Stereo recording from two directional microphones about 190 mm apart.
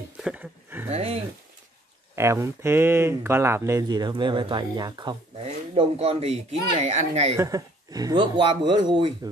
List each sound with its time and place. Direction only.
0.2 s speech: 5° right (ahead or behind)
0.8 s speech: 35° right (ahead or behind)
2.1 s speech: 15° right (ahead or behind); by 7.3 s 35° right (ahead or behind)
7.3 s speech: 20° right (ahead or behind)